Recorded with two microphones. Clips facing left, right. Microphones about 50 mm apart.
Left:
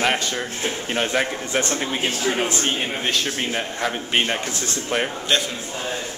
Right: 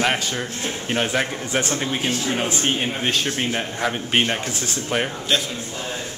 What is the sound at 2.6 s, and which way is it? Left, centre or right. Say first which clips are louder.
Speech: right 1 dB; centre.